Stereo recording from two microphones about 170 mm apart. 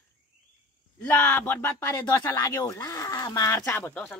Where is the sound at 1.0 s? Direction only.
10° left (ahead or behind).